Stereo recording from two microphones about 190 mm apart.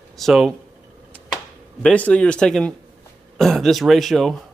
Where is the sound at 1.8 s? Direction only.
5° left (ahead or behind).